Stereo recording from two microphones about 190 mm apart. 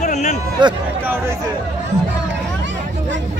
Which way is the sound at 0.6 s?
25° right (ahead or behind).